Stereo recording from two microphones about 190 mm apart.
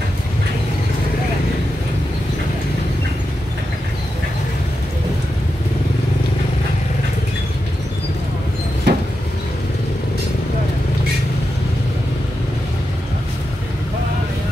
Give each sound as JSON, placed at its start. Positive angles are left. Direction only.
{"t": 8.9, "sound": "vehicle", "side_deg": -60}